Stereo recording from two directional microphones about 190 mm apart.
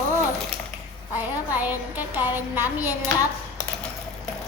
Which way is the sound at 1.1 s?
10° right (ahead or behind).